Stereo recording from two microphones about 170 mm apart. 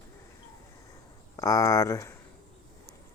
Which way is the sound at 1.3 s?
20° left (ahead or behind).